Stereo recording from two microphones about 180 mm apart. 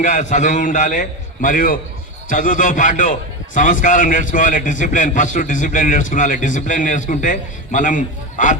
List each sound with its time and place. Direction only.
0.0 s a man's voice: 45° left (ahead or behind)